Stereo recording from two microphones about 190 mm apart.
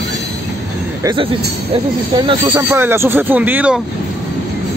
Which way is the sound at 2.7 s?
10° right (ahead or behind).